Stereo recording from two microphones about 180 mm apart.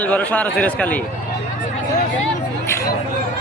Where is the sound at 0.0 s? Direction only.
10° left (ahead or behind).